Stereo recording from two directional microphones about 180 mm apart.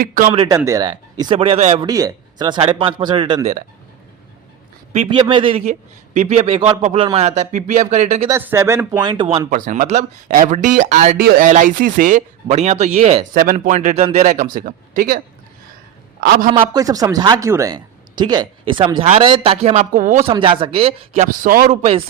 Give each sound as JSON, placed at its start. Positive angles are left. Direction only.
{"t": 0.0, "sound": "speech", "side_deg": -50}
{"t": 0.4, "sound": "speech", "side_deg": -15}
{"t": 1.8, "sound": "speech", "side_deg": -20}
{"t": 5.0, "sound": "speech", "side_deg": -25}
{"t": 8.3, "sound": "speech", "side_deg": -15}
{"t": 9.5, "sound": "speech", "side_deg": -45}
{"t": 16.2, "sound": "speech", "side_deg": -55}
{"t": 16.5, "sound": "speech", "side_deg": -25}
{"t": 19.9, "sound": "speech", "side_deg": -45}
{"t": 20.3, "sound": "speech", "side_deg": -30}
{"t": 21.2, "sound": "speech", "side_deg": -50}